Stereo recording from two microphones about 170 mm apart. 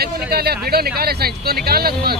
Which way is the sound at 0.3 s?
65° right (ahead or behind).